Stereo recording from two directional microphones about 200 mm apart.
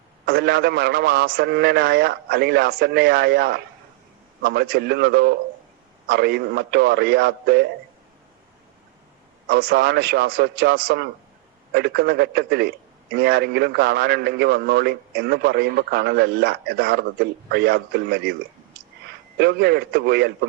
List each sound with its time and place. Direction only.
0.3 s a man's voice: 55° right (ahead or behind)
9.5 s a man's voice: 50° right (ahead or behind)
19.4 s a man's voice: 55° right (ahead or behind)